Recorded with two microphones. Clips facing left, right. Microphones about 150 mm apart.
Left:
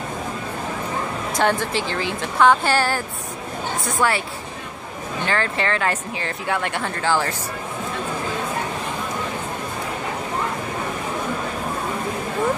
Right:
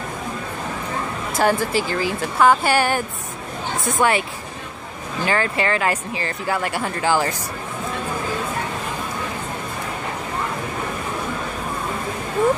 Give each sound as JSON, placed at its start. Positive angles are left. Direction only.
{"t": 1.3, "sound": "speech", "side_deg": -5}
{"t": 4.0, "sound": "speech", "side_deg": -20}
{"t": 5.2, "sound": "speech", "side_deg": -10}